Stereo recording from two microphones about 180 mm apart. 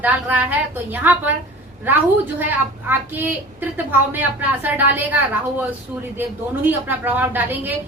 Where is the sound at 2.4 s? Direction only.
10° right (ahead or behind).